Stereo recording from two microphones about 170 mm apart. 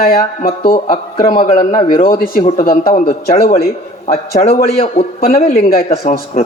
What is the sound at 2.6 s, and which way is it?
Speech, 60° left (ahead or behind).